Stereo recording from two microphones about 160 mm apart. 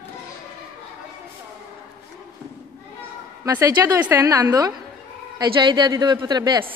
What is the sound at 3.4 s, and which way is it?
A woman's voice, 20° right (ahead or behind).